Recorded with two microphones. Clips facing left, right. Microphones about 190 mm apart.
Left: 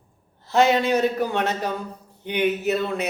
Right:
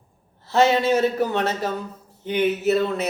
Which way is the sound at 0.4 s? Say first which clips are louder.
Right 1 dB; 15° left (ahead or behind).